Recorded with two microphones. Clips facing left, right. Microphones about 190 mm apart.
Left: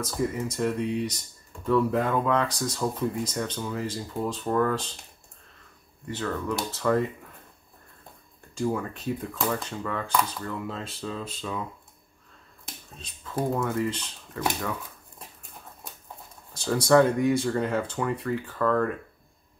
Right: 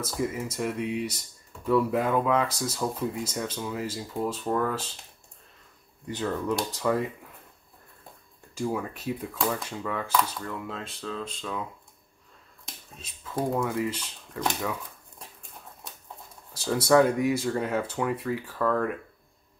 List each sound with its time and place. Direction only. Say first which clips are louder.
0.0 s speech: left 2 dB; 5° right (ahead or behind)
6.0 s speech: right 1 dB; 15° right (ahead or behind)
8.5 s speech: left 2 dB; 5° right (ahead or behind)
12.6 s speech: left 2 dB; 5° right (ahead or behind)
16.5 s speech: left 1 dB; 5° right (ahead or behind)